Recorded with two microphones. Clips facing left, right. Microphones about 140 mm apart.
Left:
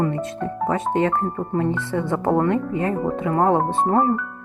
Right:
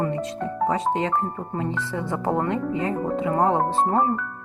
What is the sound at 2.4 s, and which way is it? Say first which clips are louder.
Speech: left 3 dB; 25° right (ahead or behind).